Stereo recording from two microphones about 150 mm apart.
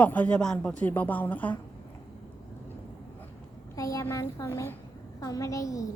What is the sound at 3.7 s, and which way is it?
A woman's voice, 20° left (ahead or behind).